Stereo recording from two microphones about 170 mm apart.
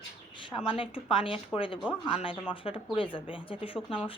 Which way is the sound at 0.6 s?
30° left (ahead or behind).